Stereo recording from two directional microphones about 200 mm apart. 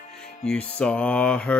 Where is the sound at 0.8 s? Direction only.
5° left (ahead or behind).